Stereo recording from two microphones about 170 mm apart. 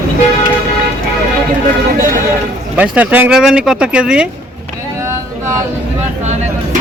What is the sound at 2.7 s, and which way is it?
Speech, 10° right (ahead or behind).